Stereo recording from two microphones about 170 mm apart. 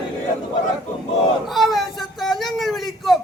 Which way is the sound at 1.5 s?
Centre (ahead or behind).